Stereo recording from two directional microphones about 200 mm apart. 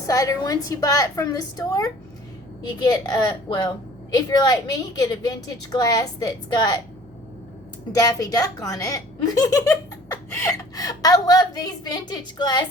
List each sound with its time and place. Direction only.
0.1 s a woman's voice: 15° left (ahead or behind)
7.9 s a woman's voice: 15° left (ahead or behind)